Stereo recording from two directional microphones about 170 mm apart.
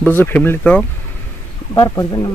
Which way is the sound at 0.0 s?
10° left (ahead or behind).